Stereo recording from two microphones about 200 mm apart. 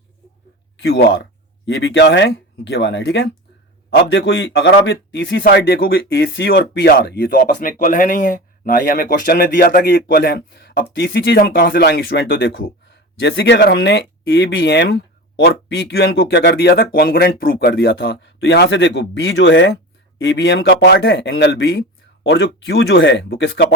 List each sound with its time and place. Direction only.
0.8 s a man's voice: 60° left (ahead or behind)